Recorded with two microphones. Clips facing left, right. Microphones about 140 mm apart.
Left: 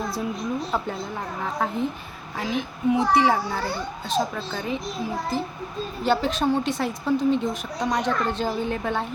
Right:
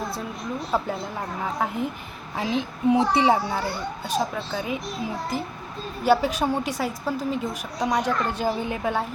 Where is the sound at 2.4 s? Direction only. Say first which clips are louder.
Right 1 dB; 20° right (ahead or behind).